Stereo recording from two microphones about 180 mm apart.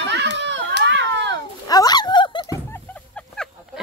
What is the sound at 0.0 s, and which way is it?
Children playing, 75° right (ahead or behind).